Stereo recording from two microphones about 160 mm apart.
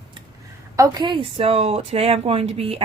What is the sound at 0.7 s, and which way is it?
A woman's voice, 20° right (ahead or behind).